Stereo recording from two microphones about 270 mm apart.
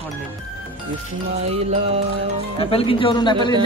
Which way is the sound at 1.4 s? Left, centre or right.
Right.